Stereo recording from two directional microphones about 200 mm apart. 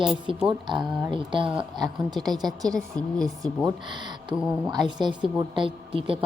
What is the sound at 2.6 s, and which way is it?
Speech, 5° left (ahead or behind).